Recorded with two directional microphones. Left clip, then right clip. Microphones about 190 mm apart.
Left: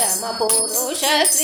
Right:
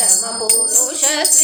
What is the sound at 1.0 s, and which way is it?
Music, 35° left (ahead or behind).